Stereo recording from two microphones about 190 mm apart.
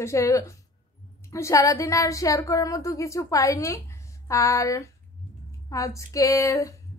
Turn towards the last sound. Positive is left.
turn(degrees=15)  # may be behind; listen again after turning